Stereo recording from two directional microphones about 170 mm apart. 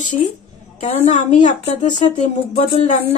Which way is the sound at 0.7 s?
45° left (ahead or behind).